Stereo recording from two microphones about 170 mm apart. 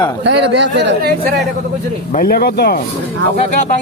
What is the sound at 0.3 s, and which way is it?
Speech, 90° right.